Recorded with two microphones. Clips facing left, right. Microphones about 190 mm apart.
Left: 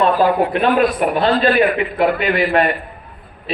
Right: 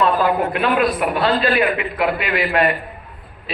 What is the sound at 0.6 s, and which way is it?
A man's voice, 50° left (ahead or behind).